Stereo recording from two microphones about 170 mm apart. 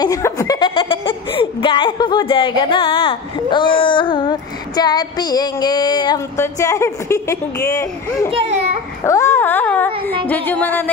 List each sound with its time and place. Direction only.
0.0 s speech: 20° left (ahead or behind)